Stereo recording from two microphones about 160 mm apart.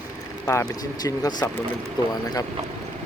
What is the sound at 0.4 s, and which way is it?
Speech, 20° left (ahead or behind).